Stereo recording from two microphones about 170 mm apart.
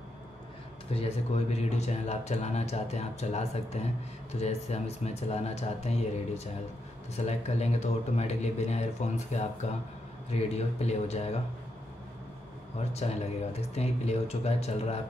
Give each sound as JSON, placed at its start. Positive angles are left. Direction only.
{"t": 0.9, "sound": "a man's voice", "side_deg": 40}
{"t": 12.9, "sound": "a man's voice", "side_deg": 40}